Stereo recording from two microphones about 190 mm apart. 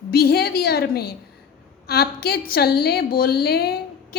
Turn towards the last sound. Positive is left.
turn(degrees=55)  # may be behind; listen again after turning